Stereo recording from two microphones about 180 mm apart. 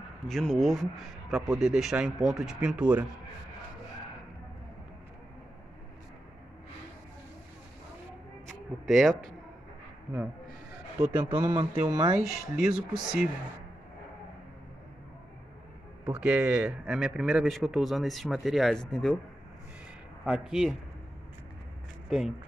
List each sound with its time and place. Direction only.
0.3 s speech: centre (ahead or behind)
8.8 s speech: centre (ahead or behind)
11.4 s speech: 25° right (ahead or behind)
12.2 s speech: 5° right (ahead or behind)
16.1 s speech: 5° right (ahead or behind)
20.2 s speech: 5° right (ahead or behind)